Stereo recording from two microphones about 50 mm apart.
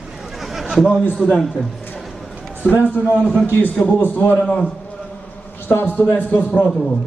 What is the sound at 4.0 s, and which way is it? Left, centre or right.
Speech, left.